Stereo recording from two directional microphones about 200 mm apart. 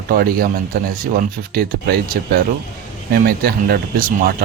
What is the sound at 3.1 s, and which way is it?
Speech, 50° right (ahead or behind).